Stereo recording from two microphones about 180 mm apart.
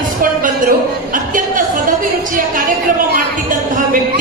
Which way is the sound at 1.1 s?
50° right (ahead or behind).